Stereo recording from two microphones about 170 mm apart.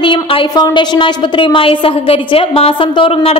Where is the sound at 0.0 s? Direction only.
30° left (ahead or behind).